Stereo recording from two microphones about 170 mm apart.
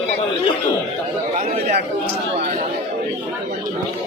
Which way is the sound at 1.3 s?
50° right (ahead or behind).